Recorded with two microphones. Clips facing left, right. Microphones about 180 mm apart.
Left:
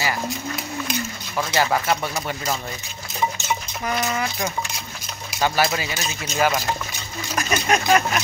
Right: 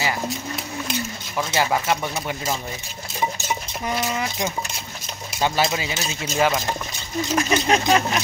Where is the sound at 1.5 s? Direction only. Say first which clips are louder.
Left 1 dB; 15° right (ahead or behind).